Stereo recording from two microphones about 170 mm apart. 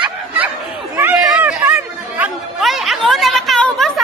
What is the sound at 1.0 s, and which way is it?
Chatter, 5° right (ahead or behind).